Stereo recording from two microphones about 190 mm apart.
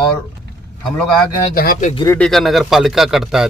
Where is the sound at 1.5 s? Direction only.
50° left (ahead or behind).